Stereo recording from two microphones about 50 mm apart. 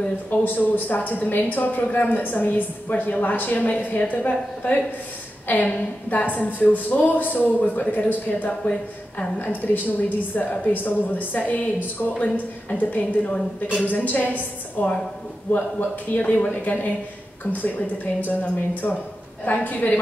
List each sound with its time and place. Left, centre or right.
0.3 s a woman's voice: left
16.2 s a woman's voice: left